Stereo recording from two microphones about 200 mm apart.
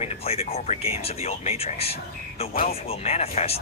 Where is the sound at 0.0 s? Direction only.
30° left (ahead or behind).